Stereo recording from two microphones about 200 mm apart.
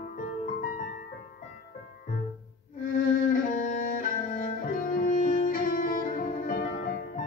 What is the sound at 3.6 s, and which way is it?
Music, 40° left (ahead or behind).